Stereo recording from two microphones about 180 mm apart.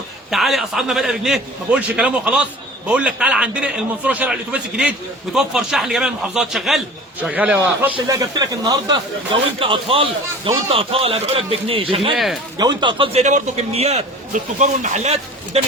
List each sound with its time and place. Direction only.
0.3 s a man's voice: centre (ahead or behind); by 11.9 s 30° right (ahead or behind)
12.1 s a man's voice: centre (ahead or behind)
12.5 s speech: 25° right (ahead or behind)
13.2 s a man's voice: 40° right (ahead or behind)